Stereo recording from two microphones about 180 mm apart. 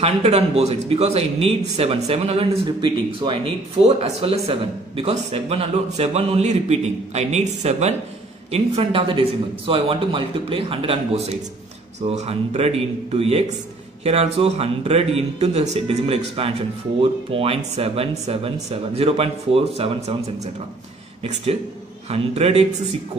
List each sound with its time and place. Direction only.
0.0 s speech: 35° right (ahead or behind)
21.2 s speech: 35° right (ahead or behind)